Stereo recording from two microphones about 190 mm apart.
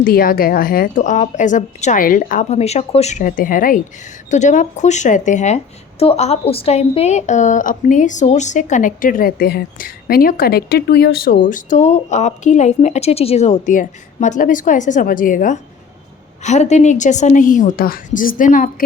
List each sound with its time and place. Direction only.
0.0 s a woman's voice: 50° left (ahead or behind)